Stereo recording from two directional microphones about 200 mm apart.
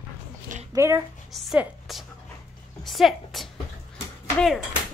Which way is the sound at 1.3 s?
Centre (ahead or behind).